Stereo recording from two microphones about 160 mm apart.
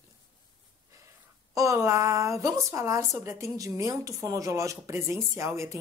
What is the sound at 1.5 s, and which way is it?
Speech, 20° right (ahead or behind).